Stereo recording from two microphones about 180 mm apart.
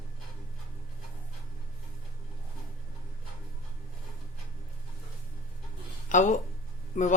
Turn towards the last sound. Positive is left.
turn(degrees=45)  # may be behind; listen again after turning